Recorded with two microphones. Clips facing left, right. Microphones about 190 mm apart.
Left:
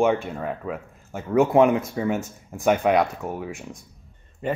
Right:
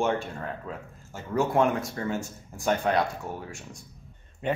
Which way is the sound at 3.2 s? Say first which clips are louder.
Left 5 dB; 60° left (ahead or behind).